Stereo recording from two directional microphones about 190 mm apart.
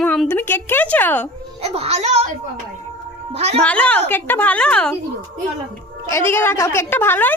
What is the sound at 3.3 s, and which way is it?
Speech, 35° right (ahead or behind).